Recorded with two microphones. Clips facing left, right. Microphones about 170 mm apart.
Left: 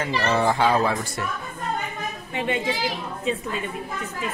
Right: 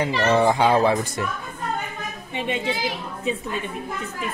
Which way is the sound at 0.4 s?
15° right (ahead or behind).